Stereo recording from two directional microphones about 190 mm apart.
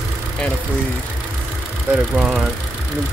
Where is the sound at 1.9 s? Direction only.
5° right (ahead or behind).